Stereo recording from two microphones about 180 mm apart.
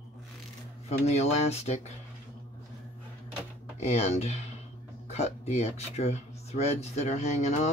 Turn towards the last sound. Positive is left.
turn(degrees=40)  # may be behind; listen again after turning